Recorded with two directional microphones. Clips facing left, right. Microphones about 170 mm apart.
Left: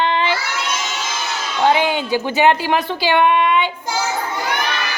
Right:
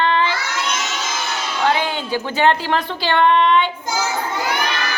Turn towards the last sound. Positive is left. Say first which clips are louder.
# even
turn(degrees=10)  # may be behind; listen again after turning